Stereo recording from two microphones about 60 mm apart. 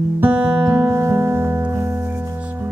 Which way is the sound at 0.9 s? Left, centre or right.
Right.